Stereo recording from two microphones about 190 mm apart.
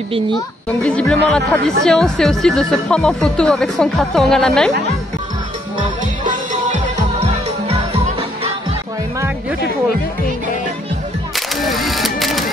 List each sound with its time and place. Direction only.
0.8 s speech: 5° left (ahead or behind)
7.6 s music: 30° right (ahead or behind)
11.3 s camera: centre (ahead or behind)